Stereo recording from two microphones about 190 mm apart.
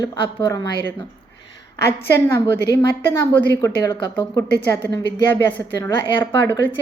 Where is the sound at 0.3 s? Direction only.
15° left (ahead or behind).